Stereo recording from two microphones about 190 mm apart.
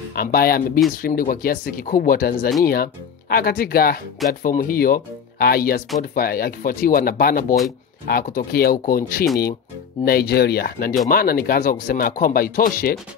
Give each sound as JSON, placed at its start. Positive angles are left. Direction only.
{"t": 0.1, "sound": "speech", "side_deg": 50}